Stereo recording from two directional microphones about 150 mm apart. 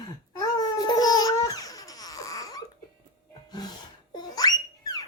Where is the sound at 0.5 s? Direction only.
25° left (ahead or behind).